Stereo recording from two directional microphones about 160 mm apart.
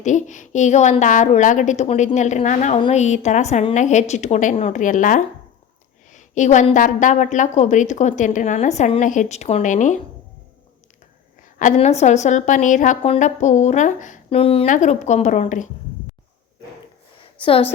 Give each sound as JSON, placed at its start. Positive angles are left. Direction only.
{"t": 0.0, "sound": "a woman's voice", "side_deg": 50}
{"t": 6.1, "sound": "a sound", "side_deg": 50}
{"t": 6.7, "sound": "a woman's voice", "side_deg": 55}
{"t": 11.6, "sound": "a woman's voice", "side_deg": 45}
{"t": 14.3, "sound": "speech", "side_deg": 35}
{"t": 14.7, "sound": "a woman's voice", "side_deg": 50}
{"t": 17.4, "sound": "speech", "side_deg": 35}